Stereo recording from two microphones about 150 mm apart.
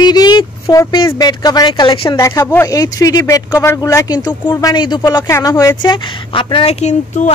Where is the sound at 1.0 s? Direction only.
25° left (ahead or behind).